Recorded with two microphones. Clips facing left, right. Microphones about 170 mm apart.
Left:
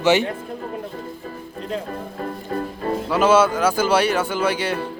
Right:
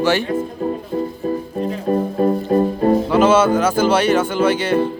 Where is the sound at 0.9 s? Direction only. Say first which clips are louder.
Right 12 dB; 30° right (ahead or behind).